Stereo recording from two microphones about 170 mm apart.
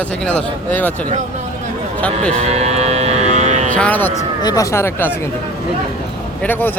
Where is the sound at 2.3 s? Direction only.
40° right (ahead or behind).